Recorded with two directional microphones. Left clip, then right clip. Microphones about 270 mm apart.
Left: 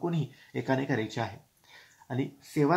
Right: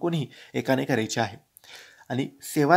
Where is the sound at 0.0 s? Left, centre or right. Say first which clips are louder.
Right 5 dB; right.